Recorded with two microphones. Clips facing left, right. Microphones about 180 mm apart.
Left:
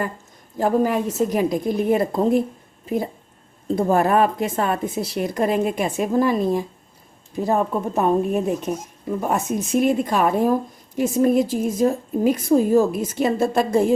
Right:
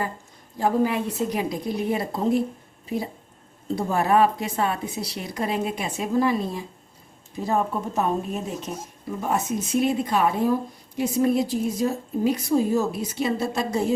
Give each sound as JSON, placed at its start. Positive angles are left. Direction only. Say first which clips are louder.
{"t": 0.5, "sound": "a woman's voice", "louder": "left 3 dB", "side_deg": 45}
{"t": 3.8, "sound": "a woman's voice", "louder": "left 3 dB", "side_deg": 50}